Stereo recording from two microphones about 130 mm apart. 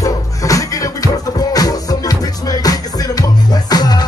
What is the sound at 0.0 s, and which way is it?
Music, 25° left (ahead or behind).